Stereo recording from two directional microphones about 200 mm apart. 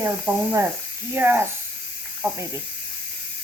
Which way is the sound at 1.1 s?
10° right (ahead or behind).